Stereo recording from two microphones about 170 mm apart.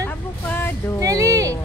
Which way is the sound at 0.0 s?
10° left (ahead or behind).